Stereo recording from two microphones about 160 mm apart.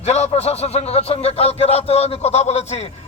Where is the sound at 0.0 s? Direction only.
45° left (ahead or behind).